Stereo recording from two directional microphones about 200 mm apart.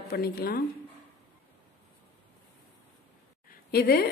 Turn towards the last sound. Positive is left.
turn(degrees=50)  # may be behind; listen again after turning